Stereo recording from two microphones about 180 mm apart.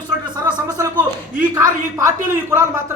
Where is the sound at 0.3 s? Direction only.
20° right (ahead or behind).